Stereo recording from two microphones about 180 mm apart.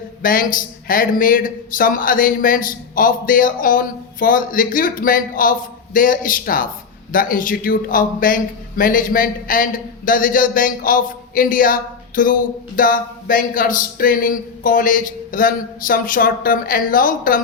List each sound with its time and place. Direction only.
0.2 s a man's voice: 50° left (ahead or behind)